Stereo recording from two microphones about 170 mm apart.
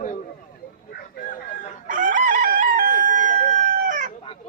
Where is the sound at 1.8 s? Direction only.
50° right (ahead or behind).